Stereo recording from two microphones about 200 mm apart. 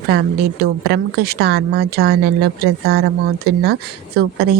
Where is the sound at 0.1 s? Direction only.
55° right (ahead or behind).